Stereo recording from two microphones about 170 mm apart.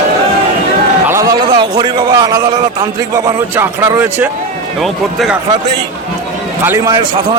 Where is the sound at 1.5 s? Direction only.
30° right (ahead or behind).